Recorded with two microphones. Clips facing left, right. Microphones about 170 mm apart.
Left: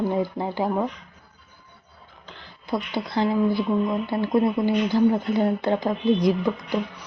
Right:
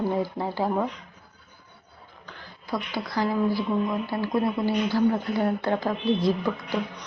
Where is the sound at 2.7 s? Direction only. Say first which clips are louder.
Left 3 dB; 25° left (ahead or behind).